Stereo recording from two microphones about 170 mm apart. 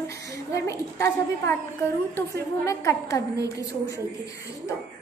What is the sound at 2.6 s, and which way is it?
Speech, 20° left (ahead or behind).